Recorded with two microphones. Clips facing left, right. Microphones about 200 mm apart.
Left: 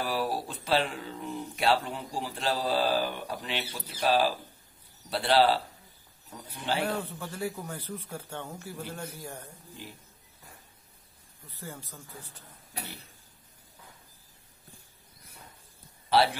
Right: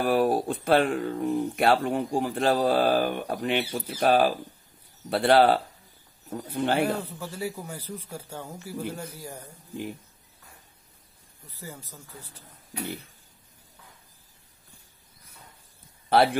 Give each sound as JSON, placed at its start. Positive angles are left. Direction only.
{"t": 0.0, "sound": "speech", "side_deg": -50}
{"t": 6.8, "sound": "speech", "side_deg": -10}
{"t": 16.1, "sound": "speech", "side_deg": -55}